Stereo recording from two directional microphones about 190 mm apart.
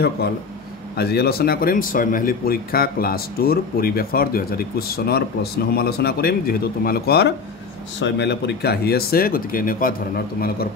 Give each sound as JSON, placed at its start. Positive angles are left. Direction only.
{"t": 0.2, "sound": "a man's voice", "side_deg": 60}